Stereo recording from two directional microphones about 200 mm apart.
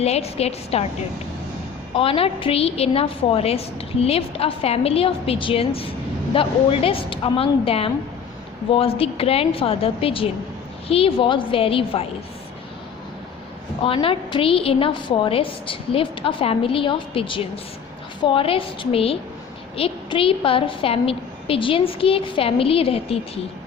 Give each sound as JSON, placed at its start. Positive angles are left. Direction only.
{"t": 0.0, "sound": "a woman's voice", "side_deg": 30}
{"t": 2.0, "sound": "a woman's voice", "side_deg": 30}
{"t": 13.8, "sound": "a woman's voice", "side_deg": 25}